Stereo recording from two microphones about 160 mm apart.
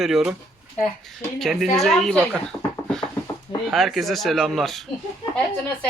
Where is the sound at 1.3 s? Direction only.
Centre (ahead or behind).